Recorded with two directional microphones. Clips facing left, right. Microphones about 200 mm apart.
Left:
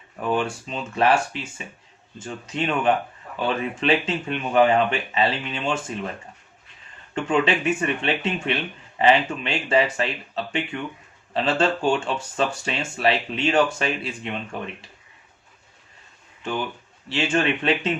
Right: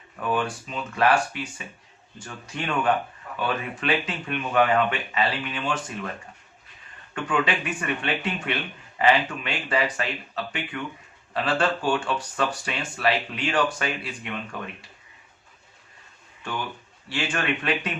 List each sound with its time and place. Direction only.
0.3 s speech: 25° left (ahead or behind)
7.1 s speech: 25° left (ahead or behind)
17.1 s speech: 25° left (ahead or behind)